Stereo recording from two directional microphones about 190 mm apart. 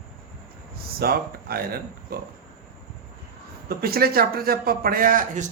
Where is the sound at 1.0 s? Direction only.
55° right (ahead or behind).